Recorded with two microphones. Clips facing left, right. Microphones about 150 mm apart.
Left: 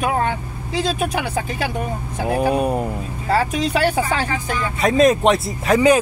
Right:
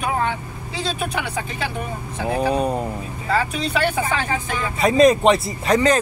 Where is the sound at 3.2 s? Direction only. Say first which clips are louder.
Left 3 dB; 35° left (ahead or behind).